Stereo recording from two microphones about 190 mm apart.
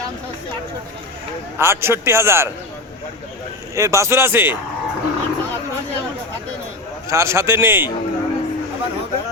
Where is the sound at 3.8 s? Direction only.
15° right (ahead or behind).